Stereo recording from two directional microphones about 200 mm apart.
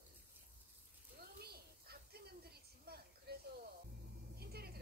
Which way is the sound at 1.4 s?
50° right (ahead or behind).